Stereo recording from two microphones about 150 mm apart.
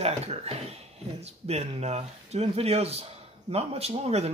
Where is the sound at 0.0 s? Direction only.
45° right (ahead or behind).